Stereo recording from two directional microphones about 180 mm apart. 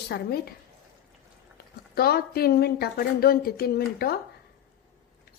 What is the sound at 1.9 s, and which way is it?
A woman's voice, 60° left (ahead or behind).